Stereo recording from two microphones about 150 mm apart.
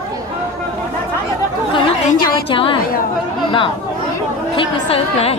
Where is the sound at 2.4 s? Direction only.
35° left (ahead or behind).